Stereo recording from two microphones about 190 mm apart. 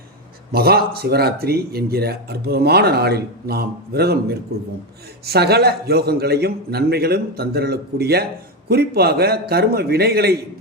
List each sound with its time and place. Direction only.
0.5 s speech: 55° right (ahead or behind)